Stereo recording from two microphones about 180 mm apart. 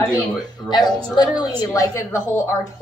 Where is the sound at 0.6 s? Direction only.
25° left (ahead or behind).